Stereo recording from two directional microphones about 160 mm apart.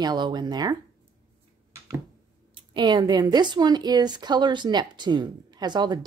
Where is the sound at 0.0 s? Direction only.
25° right (ahead or behind).